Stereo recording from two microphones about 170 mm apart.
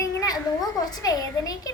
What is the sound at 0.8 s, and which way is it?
Speech, 20° left (ahead or behind).